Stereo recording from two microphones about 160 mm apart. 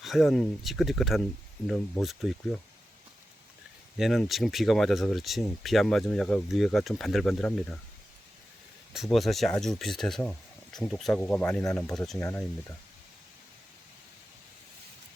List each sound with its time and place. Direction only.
0.0 s speech: centre (ahead or behind)
3.9 s speech: centre (ahead or behind)
8.9 s speech: centre (ahead or behind); by 11.9 s 15° left (ahead or behind)